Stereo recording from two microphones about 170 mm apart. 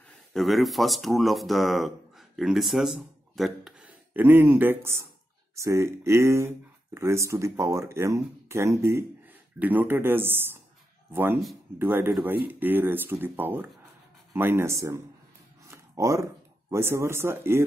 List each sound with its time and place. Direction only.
0.3 s speech: centre (ahead or behind); by 15.0 s 15° right (ahead or behind)
15.7 s a sound: 15° right (ahead or behind)
16.7 s speech: 15° right (ahead or behind)